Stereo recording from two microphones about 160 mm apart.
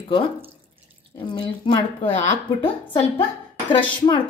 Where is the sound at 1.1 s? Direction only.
30° left (ahead or behind).